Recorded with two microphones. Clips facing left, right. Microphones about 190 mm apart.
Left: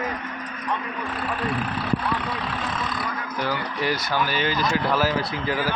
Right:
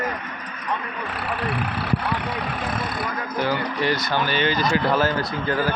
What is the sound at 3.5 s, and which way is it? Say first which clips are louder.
Speech: right 2 dB; 5° left (ahead or behind).